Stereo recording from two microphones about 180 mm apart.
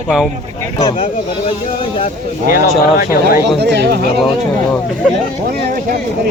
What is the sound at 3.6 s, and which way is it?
Speech, 65° right (ahead or behind).